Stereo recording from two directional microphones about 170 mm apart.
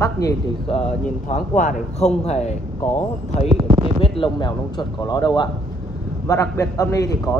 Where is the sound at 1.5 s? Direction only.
45° left (ahead or behind).